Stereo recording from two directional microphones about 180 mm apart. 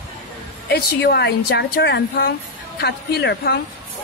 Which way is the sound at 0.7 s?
65° left (ahead or behind).